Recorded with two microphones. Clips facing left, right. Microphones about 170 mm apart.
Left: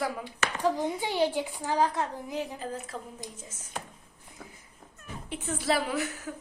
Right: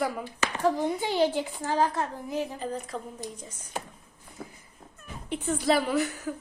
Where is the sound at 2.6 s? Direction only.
5° left (ahead or behind).